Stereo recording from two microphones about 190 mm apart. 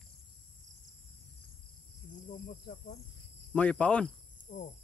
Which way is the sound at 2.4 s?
50° left (ahead or behind).